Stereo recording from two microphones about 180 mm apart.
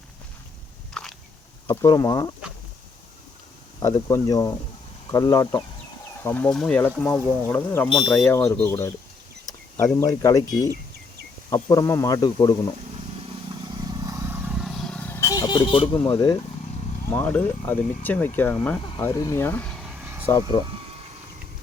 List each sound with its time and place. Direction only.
1.0 s a sound: 5° left (ahead or behind)
1.6 s speech: 15° left (ahead or behind)
3.8 s speech: 20° left (ahead or behind)
11.5 s speech: 20° left (ahead or behind)
13.8 s vehicle: 20° right (ahead or behind); by 16.4 s 20° left (ahead or behind)
17.1 s speech: 10° left (ahead or behind)
18.9 s vehicle: 20° left (ahead or behind); by 20.2 s 10° right (ahead or behind)